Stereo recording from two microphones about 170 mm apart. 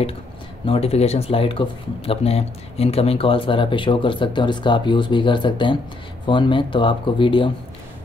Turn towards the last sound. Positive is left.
turn(degrees=30)  # may be behind; listen again after turning